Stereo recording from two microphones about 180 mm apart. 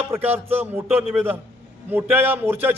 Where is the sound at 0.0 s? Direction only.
10° right (ahead or behind).